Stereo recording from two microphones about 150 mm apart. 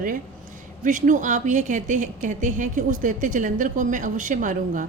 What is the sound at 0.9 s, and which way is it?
A woman's voice, 60° right (ahead or behind).